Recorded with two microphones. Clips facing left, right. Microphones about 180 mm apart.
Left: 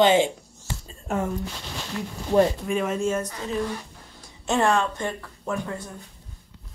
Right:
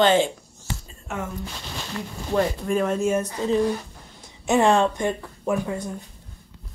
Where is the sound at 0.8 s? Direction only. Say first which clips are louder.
Left 8 dB; 35° left (ahead or behind).